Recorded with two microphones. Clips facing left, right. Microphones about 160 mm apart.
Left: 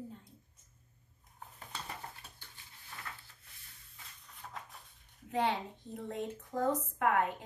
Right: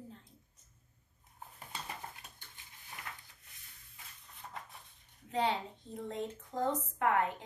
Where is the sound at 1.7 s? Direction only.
15° right (ahead or behind).